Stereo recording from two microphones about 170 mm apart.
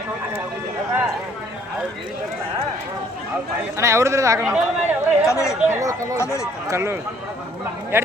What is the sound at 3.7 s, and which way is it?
Speech, 15° right (ahead or behind).